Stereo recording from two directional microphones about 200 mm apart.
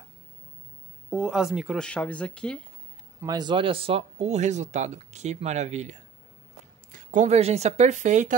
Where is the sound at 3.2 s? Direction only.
20° right (ahead or behind).